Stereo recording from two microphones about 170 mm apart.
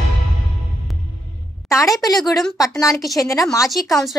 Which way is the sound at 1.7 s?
20° left (ahead or behind).